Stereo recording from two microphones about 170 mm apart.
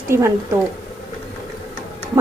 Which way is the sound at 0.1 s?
15° right (ahead or behind).